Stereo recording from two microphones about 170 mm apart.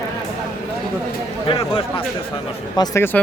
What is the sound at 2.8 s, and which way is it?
Speech, 15° left (ahead or behind).